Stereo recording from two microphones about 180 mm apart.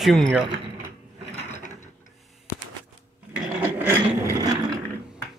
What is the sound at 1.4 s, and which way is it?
Ratchet, 40° left (ahead or behind).